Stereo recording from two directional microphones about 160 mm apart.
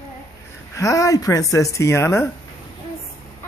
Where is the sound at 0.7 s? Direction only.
20° left (ahead or behind).